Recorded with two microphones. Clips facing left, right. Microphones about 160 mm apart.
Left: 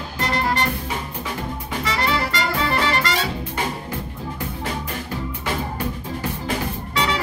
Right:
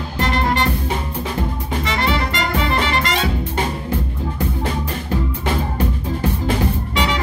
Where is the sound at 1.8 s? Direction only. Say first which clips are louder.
Right 1 dB; 25° right (ahead or behind).